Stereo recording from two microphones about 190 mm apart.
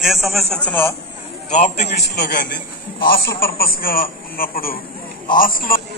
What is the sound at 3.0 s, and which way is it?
Speech, 50° left (ahead or behind).